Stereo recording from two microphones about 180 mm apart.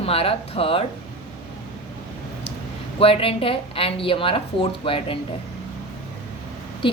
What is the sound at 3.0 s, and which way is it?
Speech, 30° left (ahead or behind).